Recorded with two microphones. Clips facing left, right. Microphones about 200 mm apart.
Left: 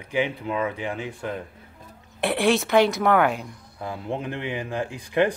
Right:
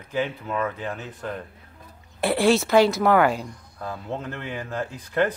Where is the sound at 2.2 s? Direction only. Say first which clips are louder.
Right 2 dB; centre (ahead or behind).